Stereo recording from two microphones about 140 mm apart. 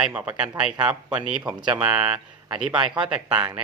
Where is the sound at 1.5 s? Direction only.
30° right (ahead or behind).